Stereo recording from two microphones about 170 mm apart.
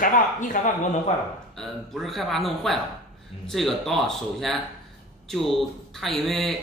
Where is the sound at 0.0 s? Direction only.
50° left (ahead or behind).